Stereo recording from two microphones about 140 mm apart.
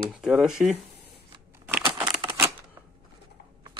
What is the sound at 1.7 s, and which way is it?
Crumpling, 15° right (ahead or behind).